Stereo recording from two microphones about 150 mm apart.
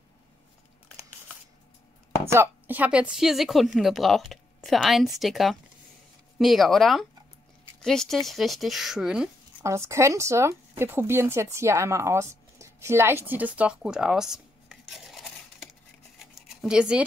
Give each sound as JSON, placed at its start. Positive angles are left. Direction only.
{"t": 2.3, "sound": "speech", "side_deg": -15}
{"t": 9.6, "sound": "speech", "side_deg": -20}
{"t": 16.3, "sound": "a sound", "side_deg": -5}